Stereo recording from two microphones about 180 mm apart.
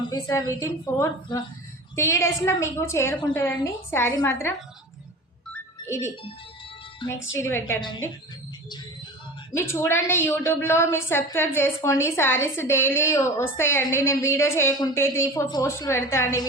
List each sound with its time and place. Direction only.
0.1 s a woman's voice: 20° left (ahead or behind)
5.8 s speech: 15° left (ahead or behind)
7.0 s speech: 30° left (ahead or behind)
7.3 s a woman's voice: 15° left (ahead or behind)
9.5 s a woman's voice: 15° left (ahead or behind)